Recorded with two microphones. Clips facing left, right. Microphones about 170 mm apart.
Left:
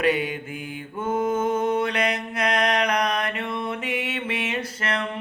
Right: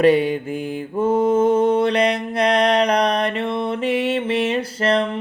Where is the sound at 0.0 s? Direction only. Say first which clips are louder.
Right 8 dB; 35° right (ahead or behind).